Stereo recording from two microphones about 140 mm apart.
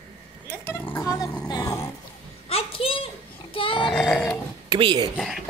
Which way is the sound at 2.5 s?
45° left (ahead or behind).